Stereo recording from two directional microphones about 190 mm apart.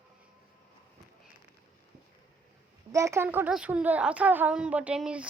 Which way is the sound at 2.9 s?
15° right (ahead or behind).